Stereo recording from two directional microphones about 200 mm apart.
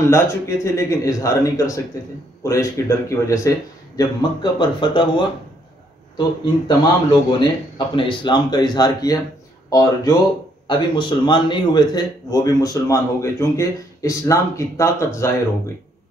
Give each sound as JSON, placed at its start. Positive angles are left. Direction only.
{"t": 0.1, "sound": "a man's voice", "side_deg": 15}
{"t": 7.1, "sound": "a man's voice", "side_deg": 25}